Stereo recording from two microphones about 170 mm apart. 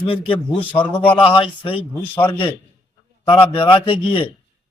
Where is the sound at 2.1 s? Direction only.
10° left (ahead or behind).